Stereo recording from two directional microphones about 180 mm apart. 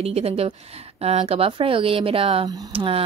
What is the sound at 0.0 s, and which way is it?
Speech, 35° right (ahead or behind).